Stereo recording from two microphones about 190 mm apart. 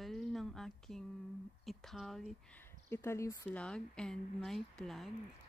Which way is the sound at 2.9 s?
15° left (ahead or behind).